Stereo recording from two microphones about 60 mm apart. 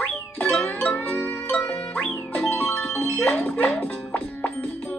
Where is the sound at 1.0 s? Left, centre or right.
Left.